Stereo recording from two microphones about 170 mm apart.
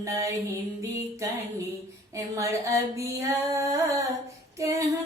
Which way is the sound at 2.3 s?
20° right (ahead or behind).